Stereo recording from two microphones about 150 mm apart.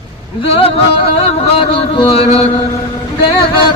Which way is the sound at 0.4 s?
40° left (ahead or behind).